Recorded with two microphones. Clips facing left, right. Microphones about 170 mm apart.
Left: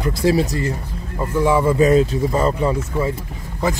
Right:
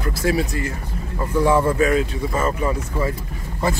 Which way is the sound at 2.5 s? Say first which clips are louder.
Left 3 dB; 20° left (ahead or behind).